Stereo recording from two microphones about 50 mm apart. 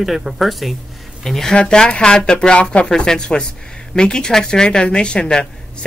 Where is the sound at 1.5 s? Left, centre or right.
Centre.